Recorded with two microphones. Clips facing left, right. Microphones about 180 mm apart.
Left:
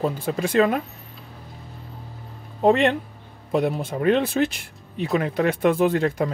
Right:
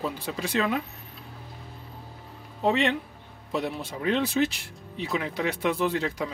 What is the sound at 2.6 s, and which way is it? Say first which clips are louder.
Speech: left 6 dB; 50° left (ahead or behind).